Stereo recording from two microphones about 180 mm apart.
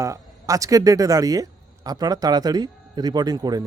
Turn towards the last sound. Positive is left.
turn(degrees=-20)  # may be behind; listen again after turning